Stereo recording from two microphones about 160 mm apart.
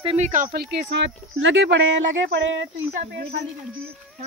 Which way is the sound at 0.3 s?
60° right (ahead or behind).